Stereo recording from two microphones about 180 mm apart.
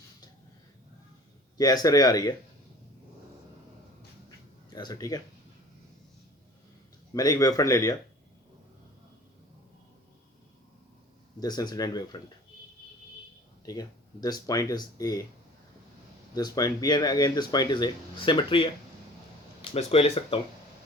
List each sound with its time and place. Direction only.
1.5 s speech: 20° left (ahead or behind)
4.7 s speech: 20° left (ahead or behind)
7.1 s speech: 20° left (ahead or behind)
11.3 s speech: 20° left (ahead or behind)
13.7 s speech: 20° left (ahead or behind)
16.3 s speech: 20° left (ahead or behind)
19.7 s speech: 35° left (ahead or behind)